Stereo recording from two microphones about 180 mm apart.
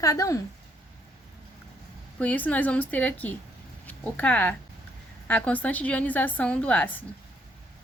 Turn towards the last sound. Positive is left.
turn(degrees=10)  # may be behind; listen again after turning